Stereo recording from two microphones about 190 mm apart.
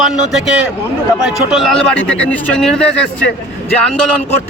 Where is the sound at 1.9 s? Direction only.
80° left.